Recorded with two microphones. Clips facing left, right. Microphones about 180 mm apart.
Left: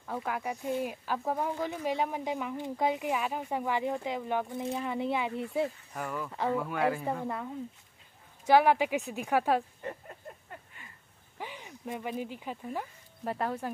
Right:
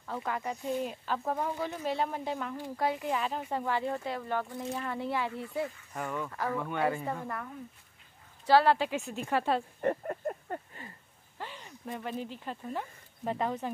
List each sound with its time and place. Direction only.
0.0 s speech: 5° left (ahead or behind)
5.9 s speech: centre (ahead or behind)
7.2 s speech: 20° left (ahead or behind)
9.8 s a sound: 55° right (ahead or behind)
11.3 s speech: 15° left (ahead or behind)